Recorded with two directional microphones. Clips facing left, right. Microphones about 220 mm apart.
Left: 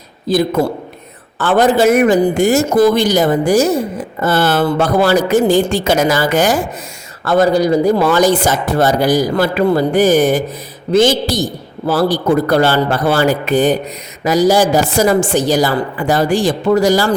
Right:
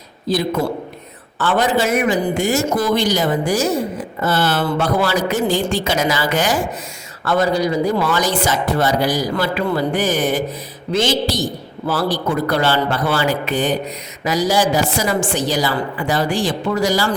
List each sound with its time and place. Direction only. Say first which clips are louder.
1.4 s speech: left 6 dB; 50° left (ahead or behind)